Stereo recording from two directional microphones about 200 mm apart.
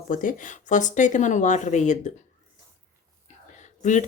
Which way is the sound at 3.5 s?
35° left (ahead or behind).